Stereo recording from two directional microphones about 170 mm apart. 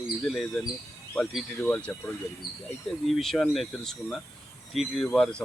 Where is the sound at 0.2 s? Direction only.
5° left (ahead or behind).